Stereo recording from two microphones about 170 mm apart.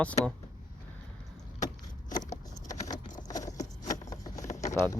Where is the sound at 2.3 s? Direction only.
20° left (ahead or behind).